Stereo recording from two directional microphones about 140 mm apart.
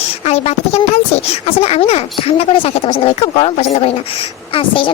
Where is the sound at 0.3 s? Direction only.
50° left (ahead or behind).